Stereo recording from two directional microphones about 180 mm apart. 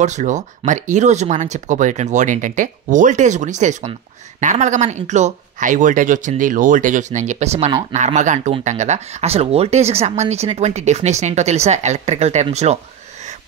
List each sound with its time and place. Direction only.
0.0 s speech: 40° right (ahead or behind)